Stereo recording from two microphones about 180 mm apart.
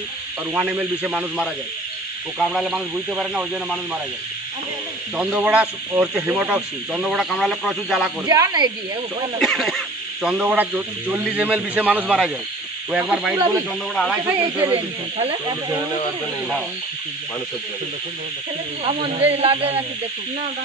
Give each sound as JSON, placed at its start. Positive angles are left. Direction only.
{"t": 0.5, "sound": "speech", "side_deg": -10}
{"t": 5.1, "sound": "speech", "side_deg": -5}
{"t": 8.3, "sound": "speech", "side_deg": -20}
{"t": 9.4, "sound": "speech", "side_deg": 0}
{"t": 14.7, "sound": "speech", "side_deg": -35}
{"t": 18.9, "sound": "speech", "side_deg": -30}